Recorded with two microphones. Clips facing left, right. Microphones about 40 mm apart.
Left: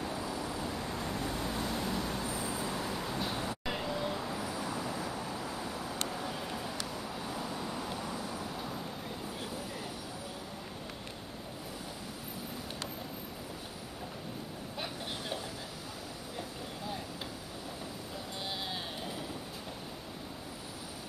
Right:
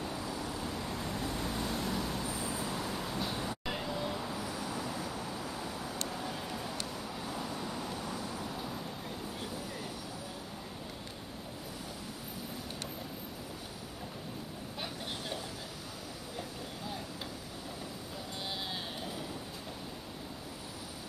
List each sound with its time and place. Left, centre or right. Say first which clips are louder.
0.0 s vehicle: left 1 dB; centre
14.8 s vehicle: left 1 dB; centre